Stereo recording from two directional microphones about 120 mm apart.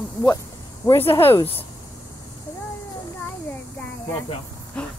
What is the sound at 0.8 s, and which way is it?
Speech, 20° left (ahead or behind).